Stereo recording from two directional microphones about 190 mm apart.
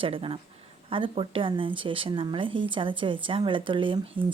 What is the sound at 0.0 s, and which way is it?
Speech, 30° right (ahead or behind).